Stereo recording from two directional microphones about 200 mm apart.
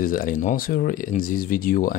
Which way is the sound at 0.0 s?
45° left (ahead or behind).